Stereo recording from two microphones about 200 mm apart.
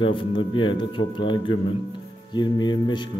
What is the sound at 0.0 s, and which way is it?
Speech, 25° left (ahead or behind).